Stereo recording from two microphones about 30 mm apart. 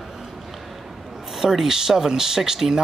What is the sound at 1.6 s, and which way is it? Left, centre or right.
Speech, centre.